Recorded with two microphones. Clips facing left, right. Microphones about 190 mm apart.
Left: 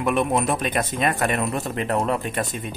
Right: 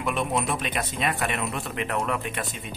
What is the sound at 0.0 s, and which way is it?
Speech, 55° left (ahead or behind).